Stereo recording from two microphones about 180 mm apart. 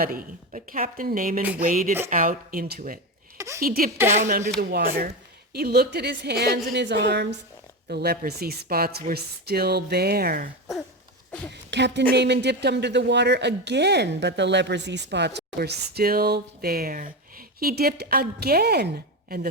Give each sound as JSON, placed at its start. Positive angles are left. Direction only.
{"t": 0.0, "sound": "a woman's voice", "side_deg": -50}
{"t": 3.3, "sound": "a sound", "side_deg": -15}
{"t": 3.6, "sound": "a woman's voice", "side_deg": -50}
{"t": 4.7, "sound": "speech", "side_deg": -55}
{"t": 11.7, "sound": "speech", "side_deg": -75}